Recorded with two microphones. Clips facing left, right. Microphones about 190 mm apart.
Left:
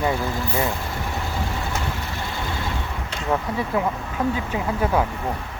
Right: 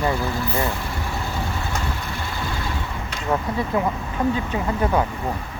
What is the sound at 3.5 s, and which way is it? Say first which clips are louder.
Speech: right 1 dB; 5° left (ahead or behind).